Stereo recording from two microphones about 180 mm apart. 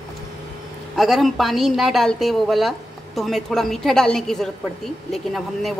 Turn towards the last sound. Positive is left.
turn(degrees=0)  # may be behind; listen again after turning